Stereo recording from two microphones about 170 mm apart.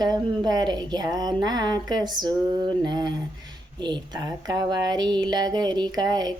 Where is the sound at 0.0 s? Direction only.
25° right (ahead or behind).